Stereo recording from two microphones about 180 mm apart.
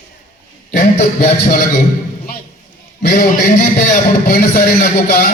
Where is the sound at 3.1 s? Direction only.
55° left (ahead or behind).